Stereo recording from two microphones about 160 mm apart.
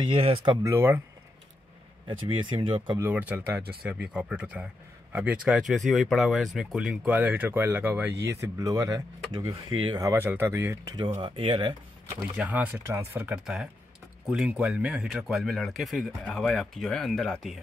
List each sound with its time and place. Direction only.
0.0 s speech: 35° right (ahead or behind)
0.7 s speech: 15° right (ahead or behind)
2.0 s speech: 30° right (ahead or behind)
3.0 s speech: 10° right (ahead or behind)
11.1 s speech: 30° right (ahead or behind)
12.4 s speech: 10° right (ahead or behind)